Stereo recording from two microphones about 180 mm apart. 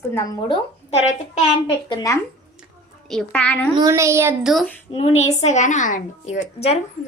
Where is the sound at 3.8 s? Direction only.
15° right (ahead or behind).